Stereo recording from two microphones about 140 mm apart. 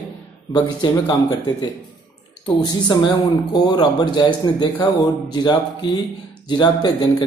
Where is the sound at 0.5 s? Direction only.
30° left (ahead or behind).